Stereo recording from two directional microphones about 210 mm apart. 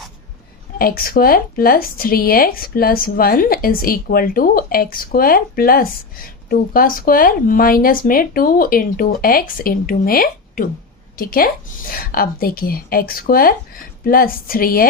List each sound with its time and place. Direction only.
0.8 s speech: 45° left (ahead or behind)